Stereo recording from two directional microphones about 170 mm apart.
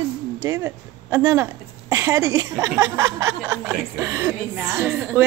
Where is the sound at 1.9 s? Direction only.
15° right (ahead or behind).